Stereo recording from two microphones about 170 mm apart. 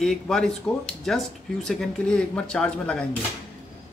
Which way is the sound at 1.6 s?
5° left (ahead or behind).